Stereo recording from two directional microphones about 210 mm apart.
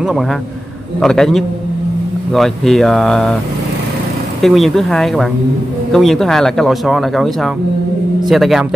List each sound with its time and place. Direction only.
1.0 s speech: centre (ahead or behind)
4.4 s speech: centre (ahead or behind)